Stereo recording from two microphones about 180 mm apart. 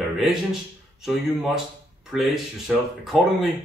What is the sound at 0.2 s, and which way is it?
Speech, centre (ahead or behind).